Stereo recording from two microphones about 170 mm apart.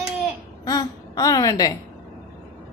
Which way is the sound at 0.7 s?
20° left (ahead or behind).